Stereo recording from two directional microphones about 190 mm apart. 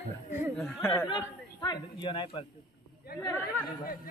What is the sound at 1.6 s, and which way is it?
Speech, 25° left (ahead or behind).